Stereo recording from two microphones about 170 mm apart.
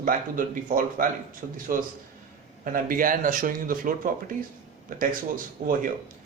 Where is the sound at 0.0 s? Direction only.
55° right (ahead or behind).